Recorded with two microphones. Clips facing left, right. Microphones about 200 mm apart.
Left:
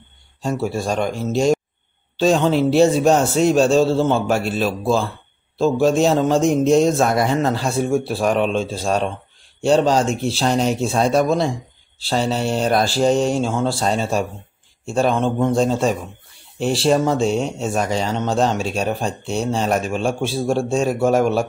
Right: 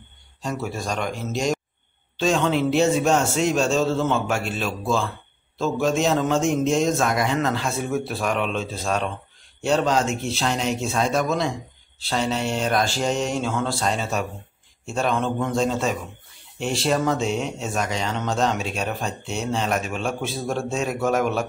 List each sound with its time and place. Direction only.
0.4 s speech: 30° left (ahead or behind)